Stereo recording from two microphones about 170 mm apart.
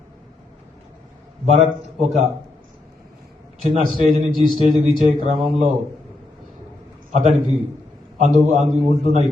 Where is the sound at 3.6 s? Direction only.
40° right (ahead or behind).